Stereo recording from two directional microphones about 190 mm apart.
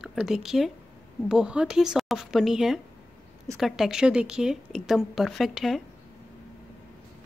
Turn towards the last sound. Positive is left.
turn(degrees=0)  # may be behind; listen again after turning